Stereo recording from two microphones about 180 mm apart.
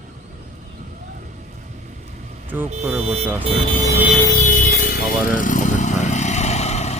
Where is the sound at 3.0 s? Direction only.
35° right (ahead or behind).